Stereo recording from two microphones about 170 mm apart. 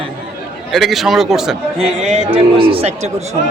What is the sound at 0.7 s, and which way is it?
Speech, centre (ahead or behind).